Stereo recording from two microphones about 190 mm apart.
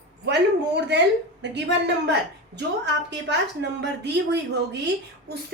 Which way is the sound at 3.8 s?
65° right (ahead or behind).